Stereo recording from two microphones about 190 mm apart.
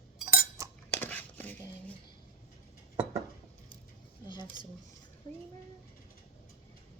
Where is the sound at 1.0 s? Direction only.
10° left (ahead or behind).